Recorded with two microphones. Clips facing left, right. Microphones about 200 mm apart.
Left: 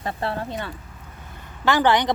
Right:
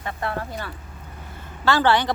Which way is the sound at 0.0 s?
30° left (ahead or behind).